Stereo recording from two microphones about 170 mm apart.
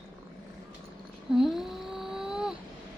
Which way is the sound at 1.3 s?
Centre (ahead or behind).